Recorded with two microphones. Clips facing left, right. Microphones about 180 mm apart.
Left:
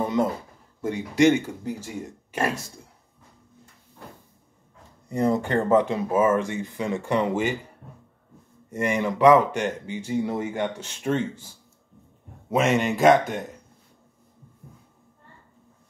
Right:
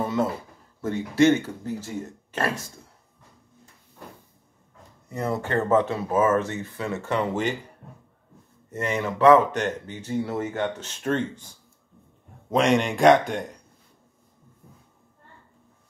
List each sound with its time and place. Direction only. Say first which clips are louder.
0.0 s a sound: left 1 dB; 15° left (ahead or behind)
0.7 s speech: right 1 dB; 15° left (ahead or behind)
5.1 s speech: left 4 dB; 15° left (ahead or behind)
8.6 s speech: left 3 dB; 10° left (ahead or behind)